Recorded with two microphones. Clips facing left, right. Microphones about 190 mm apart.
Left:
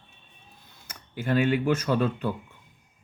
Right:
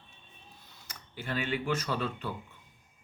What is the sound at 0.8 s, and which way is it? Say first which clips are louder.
Speech: left 10 dB; 45° left (ahead or behind).